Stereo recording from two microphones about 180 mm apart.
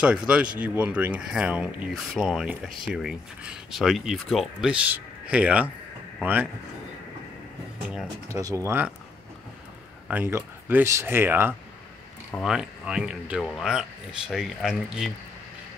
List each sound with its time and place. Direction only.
0.0 s speech: 5° right (ahead or behind)
8.3 s speech: 20° right (ahead or behind)
10.0 s speech: 10° right (ahead or behind)